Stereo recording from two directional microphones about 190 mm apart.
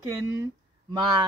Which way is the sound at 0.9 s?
25° right (ahead or behind).